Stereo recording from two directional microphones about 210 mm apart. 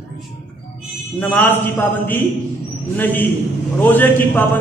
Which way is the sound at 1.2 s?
10° left (ahead or behind).